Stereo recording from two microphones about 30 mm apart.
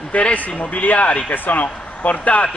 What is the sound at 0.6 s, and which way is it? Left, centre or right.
Speech, left.